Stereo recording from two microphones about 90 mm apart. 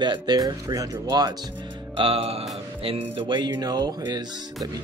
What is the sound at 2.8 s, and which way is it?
Speech, 90° right.